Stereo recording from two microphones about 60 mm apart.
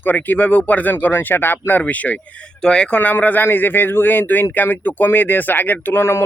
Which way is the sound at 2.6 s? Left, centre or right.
Centre.